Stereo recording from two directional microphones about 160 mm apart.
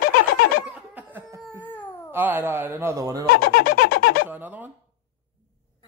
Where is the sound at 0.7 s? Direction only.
10° right (ahead or behind).